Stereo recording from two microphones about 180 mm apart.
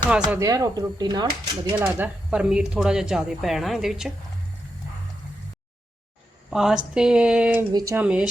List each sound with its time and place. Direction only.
0.3 s speech: 20° right (ahead or behind)
1.8 s speech: 10° right (ahead or behind)
6.5 s a woman's voice: 5° right (ahead or behind)
7.7 s speech: 20° right (ahead or behind)
7.9 s speech: 5° right (ahead or behind)